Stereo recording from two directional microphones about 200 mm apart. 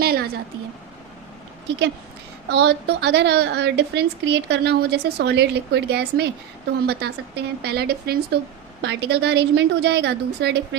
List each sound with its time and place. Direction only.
0.0 s a sound: 50° right (ahead or behind)
2.5 s a woman's voice: 60° right (ahead or behind)
8.8 s a woman's voice: 60° right (ahead or behind)